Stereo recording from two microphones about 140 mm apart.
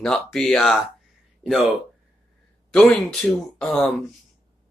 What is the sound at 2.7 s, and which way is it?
Speech, centre (ahead or behind).